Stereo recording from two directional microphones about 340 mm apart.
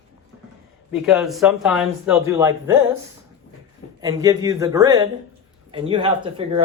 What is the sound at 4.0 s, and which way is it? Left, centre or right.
Speech, centre.